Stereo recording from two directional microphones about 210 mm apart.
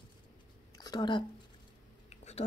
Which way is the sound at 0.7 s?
20° left (ahead or behind).